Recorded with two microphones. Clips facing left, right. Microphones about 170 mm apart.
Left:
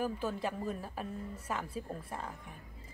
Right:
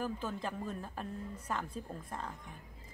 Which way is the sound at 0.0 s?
10° left (ahead or behind).